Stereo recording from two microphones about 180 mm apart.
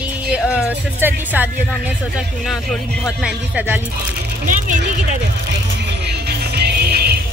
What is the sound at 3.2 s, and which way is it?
Speech, 5° right (ahead or behind).